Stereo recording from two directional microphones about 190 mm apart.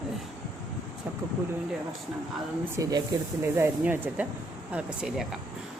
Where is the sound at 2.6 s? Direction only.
20° right (ahead or behind).